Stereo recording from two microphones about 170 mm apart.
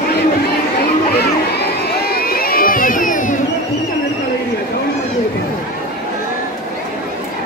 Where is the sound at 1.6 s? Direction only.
65° left (ahead or behind); by 3.3 s 50° left (ahead or behind).